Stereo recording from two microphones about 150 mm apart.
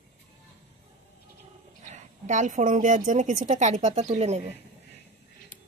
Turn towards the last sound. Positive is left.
turn(degrees=-45)  # may be behind; listen again after turning